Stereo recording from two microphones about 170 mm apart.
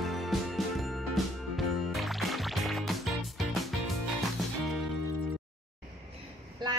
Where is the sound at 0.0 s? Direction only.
Centre (ahead or behind).